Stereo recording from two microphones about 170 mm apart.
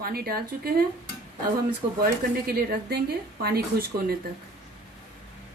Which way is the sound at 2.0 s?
60° right (ahead or behind).